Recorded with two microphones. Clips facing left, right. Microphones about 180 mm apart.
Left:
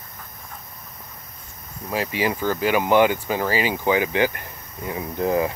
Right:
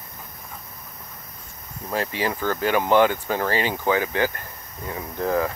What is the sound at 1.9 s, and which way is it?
Speech, 10° left (ahead or behind).